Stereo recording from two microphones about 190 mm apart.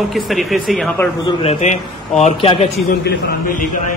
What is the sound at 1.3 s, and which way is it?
A man's voice, 30° left (ahead or behind).